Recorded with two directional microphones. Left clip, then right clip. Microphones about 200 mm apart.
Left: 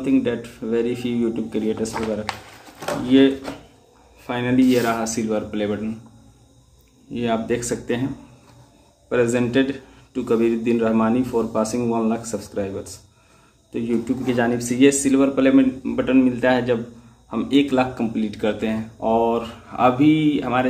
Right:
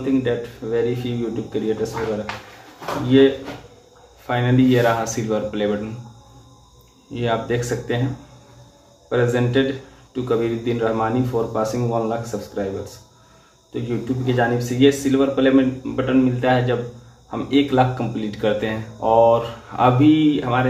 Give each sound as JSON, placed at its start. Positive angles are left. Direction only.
{"t": 0.0, "sound": "speech", "side_deg": 20}
{"t": 3.1, "sound": "speech", "side_deg": 20}
{"t": 4.3, "sound": "speech", "side_deg": 20}
{"t": 7.2, "sound": "speech", "side_deg": 20}
{"t": 9.1, "sound": "speech", "side_deg": 20}